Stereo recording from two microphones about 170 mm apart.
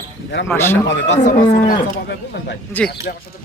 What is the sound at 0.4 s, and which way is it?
Speech, 15° left (ahead or behind).